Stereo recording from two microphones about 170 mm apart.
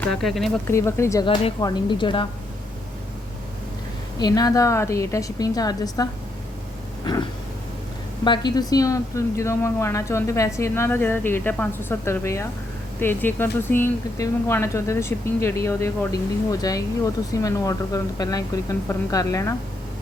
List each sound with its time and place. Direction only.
0.0 s speech: centre (ahead or behind)
0.7 s a woman's voice: 15° left (ahead or behind)
1.2 s speech: 25° left (ahead or behind)
4.2 s speech: 20° left (ahead or behind)
8.2 s a woman's voice: 25° left (ahead or behind)